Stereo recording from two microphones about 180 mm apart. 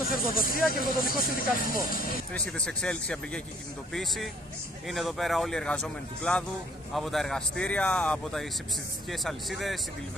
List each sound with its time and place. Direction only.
0.1 s speech: 50° left (ahead or behind)
2.3 s speech: 5° left (ahead or behind)